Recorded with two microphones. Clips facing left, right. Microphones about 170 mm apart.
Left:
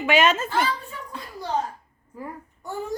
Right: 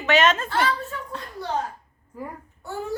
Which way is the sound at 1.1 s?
5° left (ahead or behind).